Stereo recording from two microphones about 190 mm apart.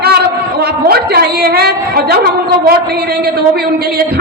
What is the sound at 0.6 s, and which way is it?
A woman's voice, 55° right (ahead or behind).